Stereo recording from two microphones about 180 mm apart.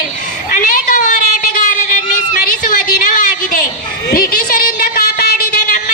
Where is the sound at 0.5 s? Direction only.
50° left (ahead or behind).